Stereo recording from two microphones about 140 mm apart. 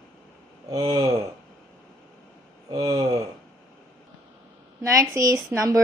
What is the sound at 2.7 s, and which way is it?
Speech, 30° right (ahead or behind).